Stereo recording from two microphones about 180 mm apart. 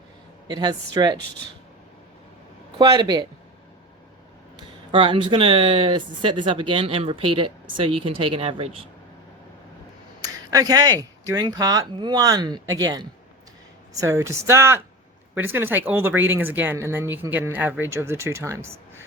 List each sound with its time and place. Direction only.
0.4 s speech: 20° right (ahead or behind)
2.7 s speech: 25° right (ahead or behind)
4.5 s speech: 30° right (ahead or behind)
10.2 s speech: 20° right (ahead or behind)